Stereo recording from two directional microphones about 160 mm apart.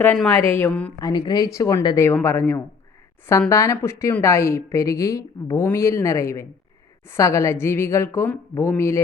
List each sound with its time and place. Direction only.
0.0 s a woman's voice: 10° left (ahead or behind)
0.9 s a woman's voice: 25° left (ahead or behind)
2.0 s a woman's voice: 15° left (ahead or behind)